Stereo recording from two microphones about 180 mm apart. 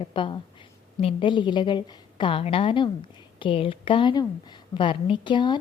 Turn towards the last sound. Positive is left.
turn(degrees=25)  # may be behind; listen again after turning